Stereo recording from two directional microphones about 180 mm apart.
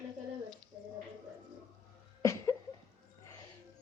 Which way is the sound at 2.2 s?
15° left (ahead or behind).